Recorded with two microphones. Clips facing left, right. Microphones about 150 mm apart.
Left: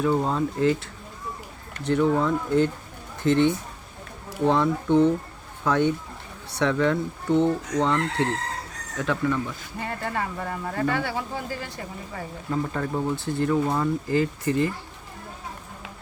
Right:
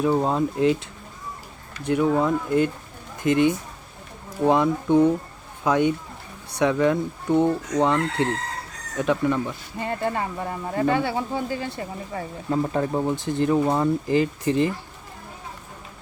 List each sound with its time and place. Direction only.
0.0 s chicken: 20° right (ahead or behind)
1.8 s chicken: 10° right (ahead or behind)
9.0 s speech: 20° right (ahead or behind)